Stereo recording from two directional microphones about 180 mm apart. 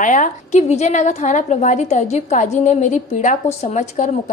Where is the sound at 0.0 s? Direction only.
45° left (ahead or behind).